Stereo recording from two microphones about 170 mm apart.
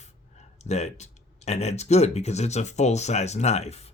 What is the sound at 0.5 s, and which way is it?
Speech, 40° left (ahead or behind).